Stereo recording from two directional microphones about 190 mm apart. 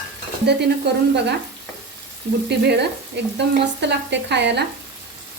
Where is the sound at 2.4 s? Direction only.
60° right (ahead or behind).